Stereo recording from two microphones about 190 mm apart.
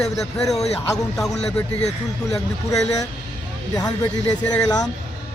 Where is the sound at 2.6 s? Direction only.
20° left (ahead or behind).